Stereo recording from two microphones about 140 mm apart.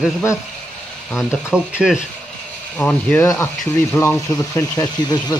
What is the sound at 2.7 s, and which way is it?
Speech, 10° left (ahead or behind).